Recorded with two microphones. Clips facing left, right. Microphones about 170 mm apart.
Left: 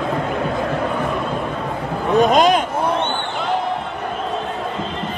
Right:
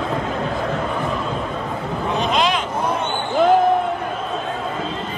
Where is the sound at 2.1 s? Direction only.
45° left (ahead or behind).